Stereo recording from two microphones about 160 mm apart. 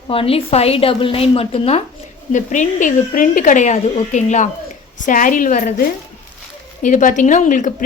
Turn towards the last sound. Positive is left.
turn(degrees=55)  # may be behind; listen again after turning